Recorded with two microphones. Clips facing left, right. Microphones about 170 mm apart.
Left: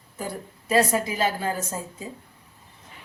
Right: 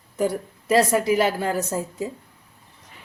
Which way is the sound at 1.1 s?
70° right (ahead or behind).